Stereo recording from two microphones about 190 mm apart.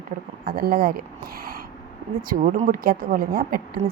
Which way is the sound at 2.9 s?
50° right (ahead or behind).